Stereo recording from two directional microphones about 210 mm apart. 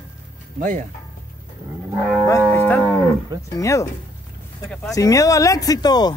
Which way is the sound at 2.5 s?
10° left (ahead or behind).